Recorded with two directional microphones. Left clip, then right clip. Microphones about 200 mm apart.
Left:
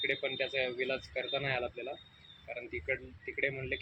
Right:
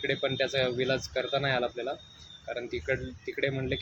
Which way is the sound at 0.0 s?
10° right (ahead or behind).